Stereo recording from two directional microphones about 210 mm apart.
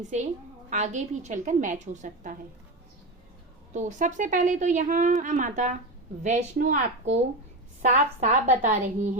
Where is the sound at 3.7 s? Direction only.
35° right (ahead or behind).